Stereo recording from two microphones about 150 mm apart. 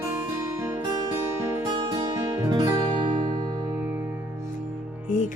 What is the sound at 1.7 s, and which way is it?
Music, 30° right (ahead or behind).